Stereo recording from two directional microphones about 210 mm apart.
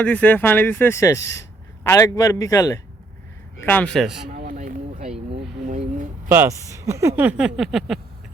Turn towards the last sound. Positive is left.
turn(degrees=0)  # may be behind; listen again after turning